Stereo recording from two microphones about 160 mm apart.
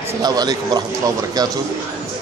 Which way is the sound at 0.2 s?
25° right (ahead or behind).